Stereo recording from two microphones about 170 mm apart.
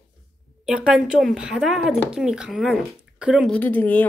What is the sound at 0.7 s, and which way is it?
Speech, 5° right (ahead or behind).